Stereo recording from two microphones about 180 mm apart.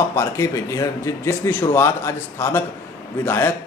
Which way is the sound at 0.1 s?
15° left (ahead or behind).